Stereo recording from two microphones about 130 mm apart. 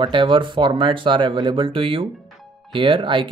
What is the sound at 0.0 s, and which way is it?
Speech, 40° right (ahead or behind).